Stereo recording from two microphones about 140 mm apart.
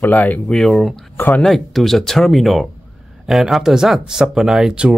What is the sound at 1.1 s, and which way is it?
Speech, 15° left (ahead or behind).